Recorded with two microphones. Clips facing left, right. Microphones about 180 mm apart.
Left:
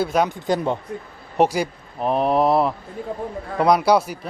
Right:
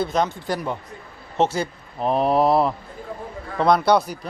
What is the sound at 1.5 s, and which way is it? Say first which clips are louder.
A man's voice: left 2 dB; 5° left (ahead or behind).